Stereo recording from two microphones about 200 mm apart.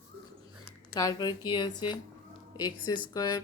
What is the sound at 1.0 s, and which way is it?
A woman's voice, 20° left (ahead or behind).